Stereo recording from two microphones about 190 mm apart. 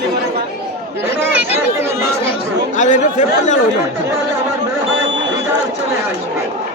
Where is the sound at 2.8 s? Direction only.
40° left (ahead or behind).